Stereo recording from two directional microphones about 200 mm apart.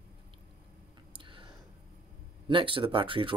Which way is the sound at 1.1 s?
25° right (ahead or behind).